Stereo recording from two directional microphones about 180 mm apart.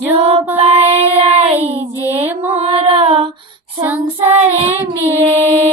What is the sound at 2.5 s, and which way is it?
Female singing, 35° right (ahead or behind).